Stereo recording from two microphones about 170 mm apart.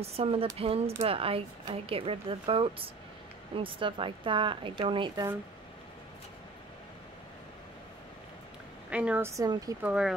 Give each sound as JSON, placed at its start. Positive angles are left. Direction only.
{"t": 0.0, "sound": "a woman's voice", "side_deg": -35}
{"t": 8.9, "sound": "a woman's voice", "side_deg": -10}
{"t": 9.4, "sound": "a woman's voice", "side_deg": -20}
{"t": 9.8, "sound": "speech", "side_deg": -5}